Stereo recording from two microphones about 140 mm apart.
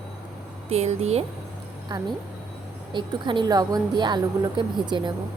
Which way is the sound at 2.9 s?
35° right (ahead or behind).